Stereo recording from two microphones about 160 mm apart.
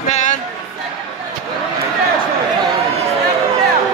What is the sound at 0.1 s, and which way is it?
Music, 50° left (ahead or behind).